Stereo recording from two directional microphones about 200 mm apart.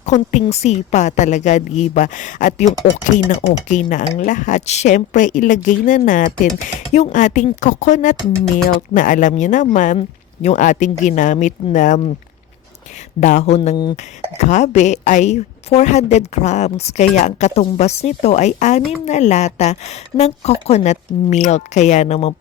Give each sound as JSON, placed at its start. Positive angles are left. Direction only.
{"t": 0.0, "sound": "a woman's voice", "side_deg": 35}
{"t": 13.1, "sound": "a woman's voice", "side_deg": 35}